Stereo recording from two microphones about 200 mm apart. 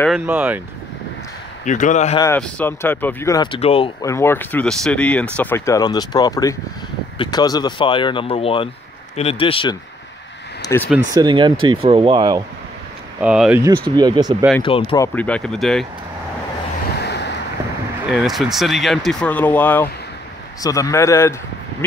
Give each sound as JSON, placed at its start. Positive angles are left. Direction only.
{"t": 0.3, "sound": "speech", "side_deg": -10}
{"t": 1.6, "sound": "a man's voice", "side_deg": 40}
{"t": 2.1, "sound": "speech", "side_deg": 10}
{"t": 3.5, "sound": "speech", "side_deg": 30}
{"t": 4.0, "sound": "speech", "side_deg": 15}
{"t": 11.1, "sound": "speech", "side_deg": -25}
{"t": 13.2, "sound": "speech", "side_deg": -5}
{"t": 13.9, "sound": "speech", "side_deg": -20}
{"t": 14.6, "sound": "speech", "side_deg": 25}
{"t": 15.0, "sound": "speech", "side_deg": 5}
{"t": 17.0, "sound": "boat", "side_deg": 55}
{"t": 18.0, "sound": "speech", "side_deg": 0}